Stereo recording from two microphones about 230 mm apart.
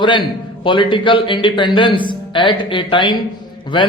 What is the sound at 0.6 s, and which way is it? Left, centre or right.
A man's voice, left.